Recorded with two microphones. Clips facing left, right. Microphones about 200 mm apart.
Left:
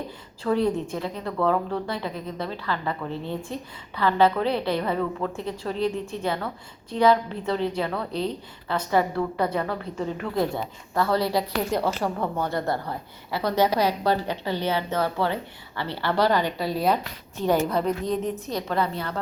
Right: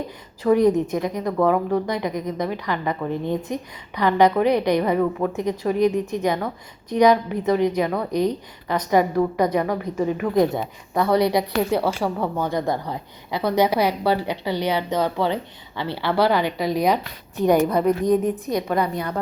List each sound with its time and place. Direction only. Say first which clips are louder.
0.4 s a woman's voice: right 6 dB; 15° right (ahead or behind)